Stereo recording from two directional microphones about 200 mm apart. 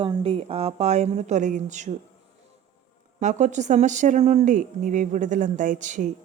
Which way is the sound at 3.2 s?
35° right (ahead or behind).